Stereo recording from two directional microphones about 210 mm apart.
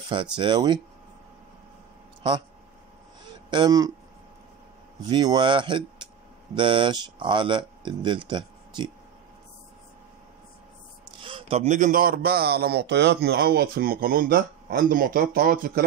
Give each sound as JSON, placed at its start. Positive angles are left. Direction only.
{"t": 0.4, "sound": "speech", "side_deg": -20}
{"t": 3.3, "sound": "a sound", "side_deg": -20}
{"t": 5.0, "sound": "speech", "side_deg": -20}
{"t": 11.2, "sound": "a man's voice", "side_deg": -25}